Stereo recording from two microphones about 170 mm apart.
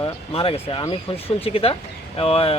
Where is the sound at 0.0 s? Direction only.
35° left (ahead or behind).